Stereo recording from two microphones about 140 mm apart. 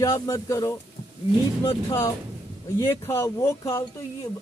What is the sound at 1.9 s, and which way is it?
A woman's voice, 20° left (ahead or behind).